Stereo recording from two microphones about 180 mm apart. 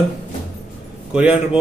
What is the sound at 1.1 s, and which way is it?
Speech, 5° right (ahead or behind).